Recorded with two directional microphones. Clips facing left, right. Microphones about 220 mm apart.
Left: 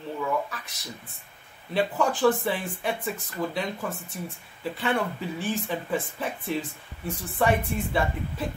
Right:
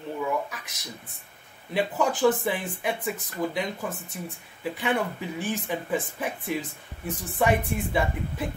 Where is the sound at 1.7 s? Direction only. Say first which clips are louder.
Even; 15° right (ahead or behind).